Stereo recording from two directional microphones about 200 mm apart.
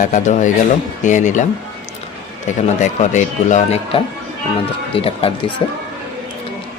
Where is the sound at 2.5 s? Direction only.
35° left (ahead or behind).